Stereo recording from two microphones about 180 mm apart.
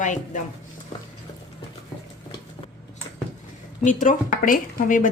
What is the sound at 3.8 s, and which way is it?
Speech, 45° left (ahead or behind).